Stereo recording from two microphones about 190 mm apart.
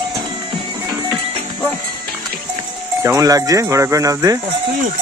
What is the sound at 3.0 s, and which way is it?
Speech, 15° right (ahead or behind).